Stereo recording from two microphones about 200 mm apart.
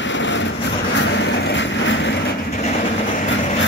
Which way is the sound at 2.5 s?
35° left (ahead or behind).